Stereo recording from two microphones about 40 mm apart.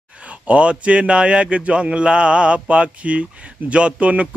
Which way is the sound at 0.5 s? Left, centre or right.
Right.